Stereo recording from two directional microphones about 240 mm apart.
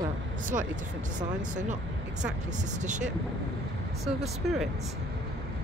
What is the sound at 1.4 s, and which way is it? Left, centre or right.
Speech, right.